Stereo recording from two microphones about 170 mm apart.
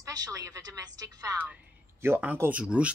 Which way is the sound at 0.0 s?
20° right (ahead or behind).